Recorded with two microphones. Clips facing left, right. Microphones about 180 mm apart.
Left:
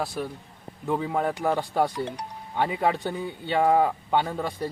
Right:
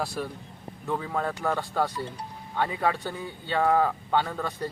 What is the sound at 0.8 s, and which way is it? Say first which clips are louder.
A man's voice: left 4 dB; 15° left (ahead or behind).